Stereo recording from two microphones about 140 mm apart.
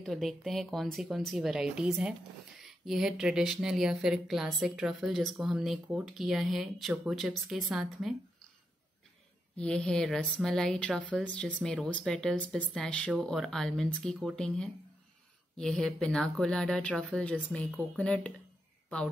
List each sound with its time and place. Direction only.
0.0 s speech: centre (ahead or behind)
9.6 s speech: 5° left (ahead or behind)